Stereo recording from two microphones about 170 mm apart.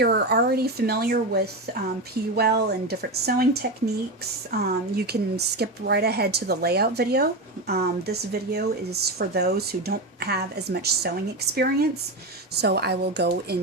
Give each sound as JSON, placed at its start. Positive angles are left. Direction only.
{"t": 0.0, "sound": "speech", "side_deg": -70}